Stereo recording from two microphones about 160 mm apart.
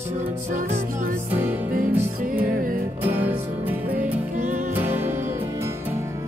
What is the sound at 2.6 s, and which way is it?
Music, 60° right (ahead or behind).